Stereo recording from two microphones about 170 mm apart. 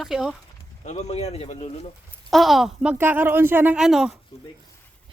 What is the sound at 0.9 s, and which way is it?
A man's voice, 40° left (ahead or behind).